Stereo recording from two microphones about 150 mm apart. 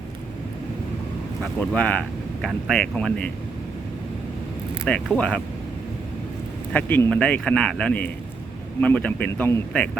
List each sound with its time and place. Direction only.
1.5 s speech: 10° left (ahead or behind)
5.1 s speech: 10° left (ahead or behind)
6.7 s speech: 10° left (ahead or behind)